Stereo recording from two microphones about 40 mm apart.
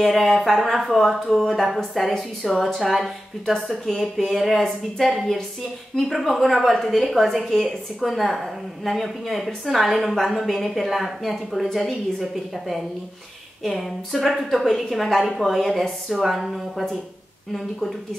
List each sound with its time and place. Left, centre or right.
0.0 s a woman's voice: centre
1.4 s a woman's voice: centre